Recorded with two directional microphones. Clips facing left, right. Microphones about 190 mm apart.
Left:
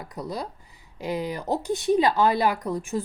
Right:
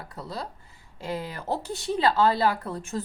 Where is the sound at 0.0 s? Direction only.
15° left (ahead or behind).